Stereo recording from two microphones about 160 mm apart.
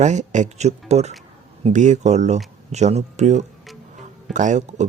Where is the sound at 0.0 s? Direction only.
45° right (ahead or behind).